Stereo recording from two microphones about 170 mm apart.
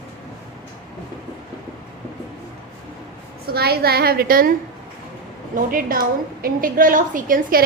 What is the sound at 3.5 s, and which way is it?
Speech, 65° right (ahead or behind).